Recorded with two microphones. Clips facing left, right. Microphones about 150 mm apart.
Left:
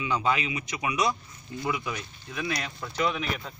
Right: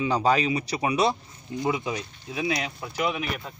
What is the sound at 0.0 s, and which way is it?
Speech, 35° right (ahead or behind).